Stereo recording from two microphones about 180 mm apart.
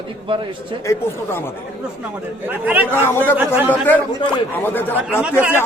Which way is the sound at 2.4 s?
10° right (ahead or behind).